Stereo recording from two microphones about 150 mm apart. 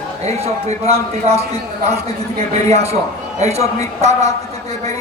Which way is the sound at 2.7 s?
45° right (ahead or behind).